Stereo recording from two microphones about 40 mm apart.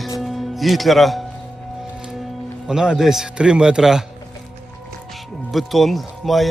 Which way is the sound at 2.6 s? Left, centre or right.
Centre.